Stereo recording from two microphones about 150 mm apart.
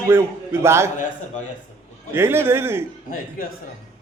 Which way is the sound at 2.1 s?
15° right (ahead or behind).